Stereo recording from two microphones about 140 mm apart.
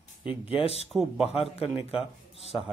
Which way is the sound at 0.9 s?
Centre (ahead or behind).